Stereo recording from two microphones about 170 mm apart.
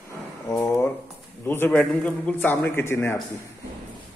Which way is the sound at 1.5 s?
10° left (ahead or behind).